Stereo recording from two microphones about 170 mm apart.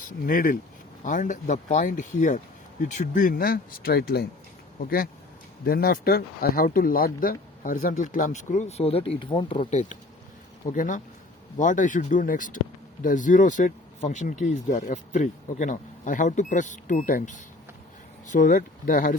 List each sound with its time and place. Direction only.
0.1 s speech: 55° left (ahead or behind); by 9.6 s 30° left (ahead or behind)
9.6 s speech: 45° left (ahead or behind)